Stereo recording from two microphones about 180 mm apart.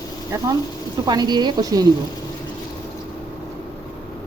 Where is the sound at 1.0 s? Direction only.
25° right (ahead or behind).